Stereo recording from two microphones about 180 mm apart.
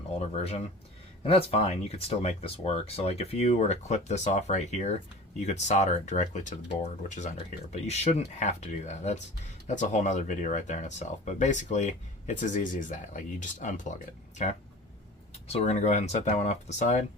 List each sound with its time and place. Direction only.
1.2 s speech: 35° left (ahead or behind)